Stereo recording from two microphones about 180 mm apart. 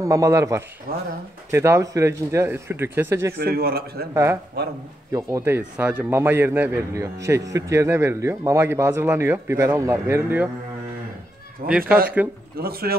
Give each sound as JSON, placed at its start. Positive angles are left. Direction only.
{"t": 0.0, "sound": "a man's voice", "side_deg": -15}
{"t": 0.9, "sound": "a man's voice", "side_deg": -55}
{"t": 1.5, "sound": "a man's voice", "side_deg": -15}
{"t": 3.3, "sound": "a man's voice", "side_deg": -60}
{"t": 4.1, "sound": "a man's voice", "side_deg": -15}
{"t": 11.6, "sound": "a man's voice", "side_deg": -50}